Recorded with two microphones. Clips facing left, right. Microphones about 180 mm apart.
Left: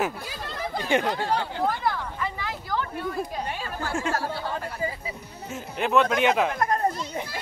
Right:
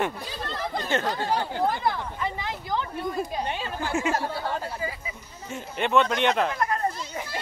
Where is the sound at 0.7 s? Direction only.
15° left (ahead or behind).